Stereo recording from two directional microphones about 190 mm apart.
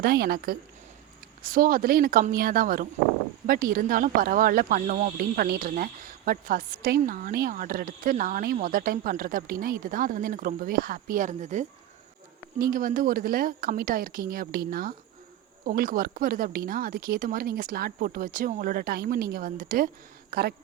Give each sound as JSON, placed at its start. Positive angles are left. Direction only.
{"t": 0.0, "sound": "speech", "side_deg": -55}